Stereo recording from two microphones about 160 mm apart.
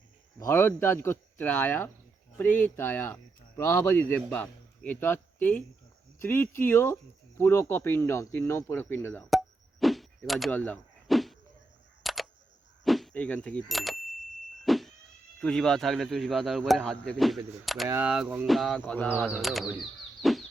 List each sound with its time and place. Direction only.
0.3 s speech: 15° left (ahead or behind)
9.8 s power windows: centre (ahead or behind)
12.0 s a sound: centre (ahead or behind)
12.8 s power windows: centre (ahead or behind)
13.7 s a man's voice: centre (ahead or behind)
14.6 s vehicle: centre (ahead or behind)
15.4 s a man's voice: 5° left (ahead or behind)
17.8 s a man's voice: 10° right (ahead or behind)
18.9 s speech: 10° left (ahead or behind)
19.2 s a man's voice: 5° right (ahead or behind)
20.2 s a sound: centre (ahead or behind)